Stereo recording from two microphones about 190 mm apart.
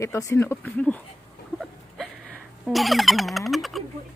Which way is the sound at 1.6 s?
Centre (ahead or behind).